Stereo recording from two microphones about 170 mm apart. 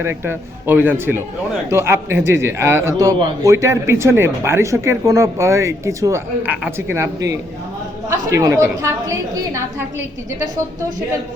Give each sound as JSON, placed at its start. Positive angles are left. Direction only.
{"t": 0.0, "sound": "a man's voice", "side_deg": -15}